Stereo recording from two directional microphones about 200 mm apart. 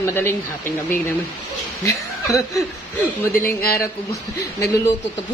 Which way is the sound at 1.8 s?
15° left (ahead or behind).